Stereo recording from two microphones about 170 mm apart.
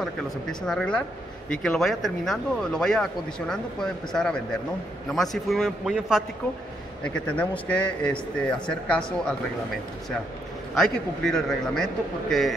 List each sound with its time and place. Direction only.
0.0 s speech: 5° left (ahead or behind)
7.0 s a man's voice: 10° left (ahead or behind)
10.7 s speech: 5° left (ahead or behind)